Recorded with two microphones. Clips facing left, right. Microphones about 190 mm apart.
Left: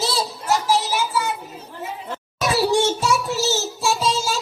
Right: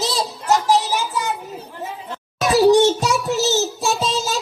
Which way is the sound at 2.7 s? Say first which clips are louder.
Right 4 dB; 20° right (ahead or behind).